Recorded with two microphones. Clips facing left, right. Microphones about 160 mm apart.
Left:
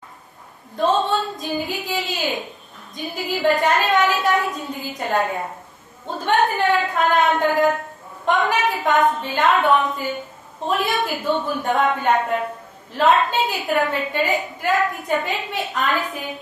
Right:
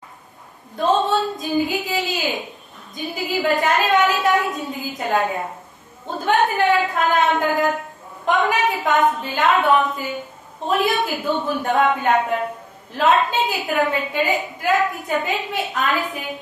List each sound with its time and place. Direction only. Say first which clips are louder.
0.7 s a woman's voice: right 1 dB; centre (ahead or behind)